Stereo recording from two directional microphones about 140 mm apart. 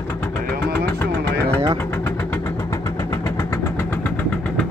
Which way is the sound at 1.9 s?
15° left (ahead or behind).